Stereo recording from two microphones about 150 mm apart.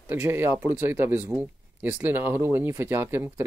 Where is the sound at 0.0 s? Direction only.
15° right (ahead or behind).